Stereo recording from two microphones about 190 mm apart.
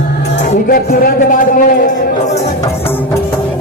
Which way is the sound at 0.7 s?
50° left (ahead or behind).